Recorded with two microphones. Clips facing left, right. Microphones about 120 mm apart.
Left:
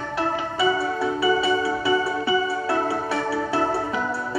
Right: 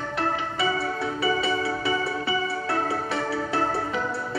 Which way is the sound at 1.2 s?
25° left (ahead or behind).